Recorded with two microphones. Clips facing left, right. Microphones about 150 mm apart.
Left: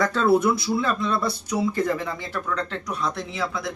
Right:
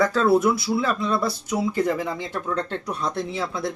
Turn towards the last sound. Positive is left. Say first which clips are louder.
# right 1 dB
turn(degrees=-30)  # may be behind; listen again after turning